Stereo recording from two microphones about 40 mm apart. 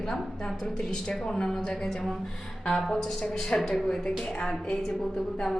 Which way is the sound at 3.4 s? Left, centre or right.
Centre.